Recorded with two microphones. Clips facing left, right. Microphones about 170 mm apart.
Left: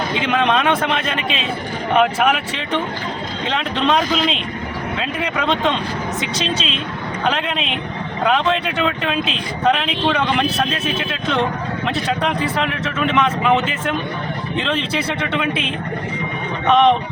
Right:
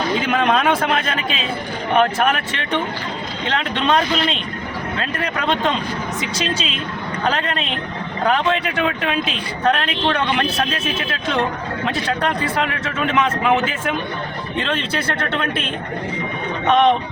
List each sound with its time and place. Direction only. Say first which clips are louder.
0.2 s a woman's voice: left 3 dB; 5° right (ahead or behind)